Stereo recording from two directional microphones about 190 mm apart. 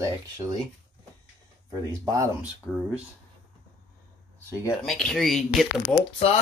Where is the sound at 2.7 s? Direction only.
5° left (ahead or behind).